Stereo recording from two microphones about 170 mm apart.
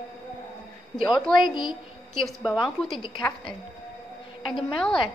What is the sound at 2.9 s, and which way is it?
Speech, 30° left (ahead or behind).